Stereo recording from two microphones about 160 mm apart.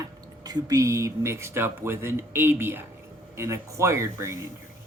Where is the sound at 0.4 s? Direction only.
25° right (ahead or behind).